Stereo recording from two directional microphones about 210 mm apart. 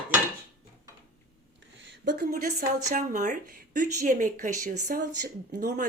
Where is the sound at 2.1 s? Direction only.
45° right (ahead or behind).